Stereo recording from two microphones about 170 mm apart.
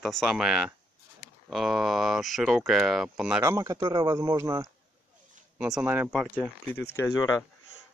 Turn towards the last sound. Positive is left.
turn(degrees=20)  # may be behind; listen again after turning